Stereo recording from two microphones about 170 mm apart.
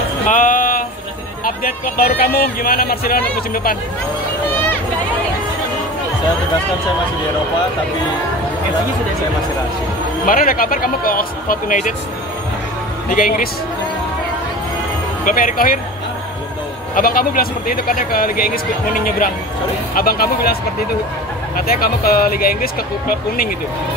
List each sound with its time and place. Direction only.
0.3 s music: 50° left (ahead or behind)
1.4 s speech: 60° left (ahead or behind)
10.2 s speech: 55° left (ahead or behind)
13.1 s speech: 50° left (ahead or behind)
15.2 s speech: 55° left (ahead or behind)
16.9 s speech: 60° left (ahead or behind)
21.5 s speech: 60° left (ahead or behind)